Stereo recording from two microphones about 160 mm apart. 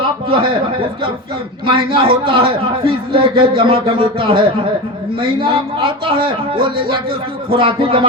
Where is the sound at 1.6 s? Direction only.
35° right (ahead or behind).